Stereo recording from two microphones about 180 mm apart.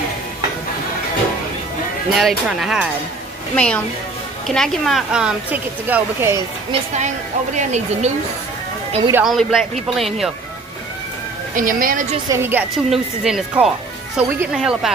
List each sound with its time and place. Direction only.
2.1 s speech: centre (ahead or behind)
3.5 s a woman's voice: 5° left (ahead or behind); by 6.4 s 10° right (ahead or behind)
6.7 s speech: 40° right (ahead or behind)
9.1 s speech: centre (ahead or behind)
11.5 s a woman's voice: 50° right (ahead or behind)
12.3 s a woman's voice: 10° right (ahead or behind)